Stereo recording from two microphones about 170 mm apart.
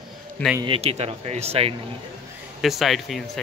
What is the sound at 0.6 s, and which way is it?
Speech, 35° right (ahead or behind).